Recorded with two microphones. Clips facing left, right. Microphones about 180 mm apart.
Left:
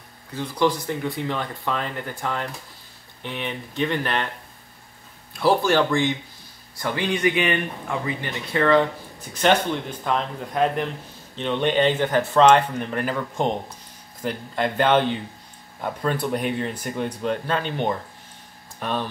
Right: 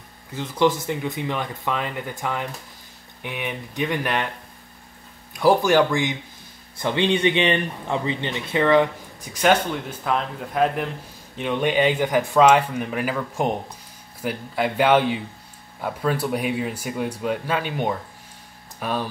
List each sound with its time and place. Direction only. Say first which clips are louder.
0.3 s speech: right 1 dB; 20° right (ahead or behind)
5.3 s speech: right 2 dB; 15° right (ahead or behind)